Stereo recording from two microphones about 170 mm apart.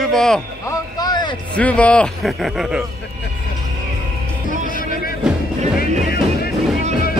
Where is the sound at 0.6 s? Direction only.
20° left (ahead or behind).